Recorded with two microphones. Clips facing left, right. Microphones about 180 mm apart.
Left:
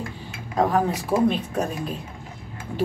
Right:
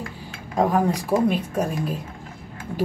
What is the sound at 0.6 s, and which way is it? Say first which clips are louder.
A woman's voice: right 1 dB; 10° right (ahead or behind).